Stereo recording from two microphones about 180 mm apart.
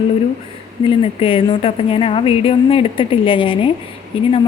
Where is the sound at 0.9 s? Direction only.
30° left (ahead or behind).